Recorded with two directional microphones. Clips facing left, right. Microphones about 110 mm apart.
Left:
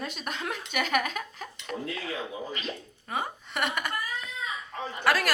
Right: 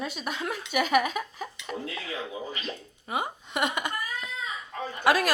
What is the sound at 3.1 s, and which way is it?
A woman's voice, 15° right (ahead or behind).